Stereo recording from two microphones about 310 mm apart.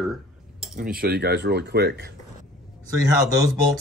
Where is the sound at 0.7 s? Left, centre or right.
Right.